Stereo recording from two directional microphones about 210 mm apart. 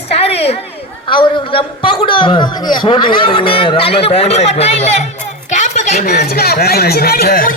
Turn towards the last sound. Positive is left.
turn(degrees=40)  # may be behind; listen again after turning